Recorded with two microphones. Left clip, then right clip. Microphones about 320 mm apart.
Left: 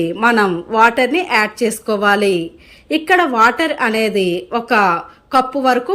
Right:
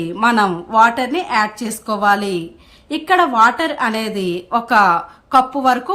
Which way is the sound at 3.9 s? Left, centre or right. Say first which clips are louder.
Left 5 dB; right.